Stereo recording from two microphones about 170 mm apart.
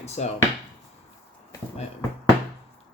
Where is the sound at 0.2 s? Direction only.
40° left (ahead or behind).